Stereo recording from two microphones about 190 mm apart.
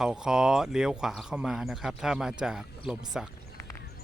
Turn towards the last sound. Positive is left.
turn(degrees=-5)  # may be behind; listen again after turning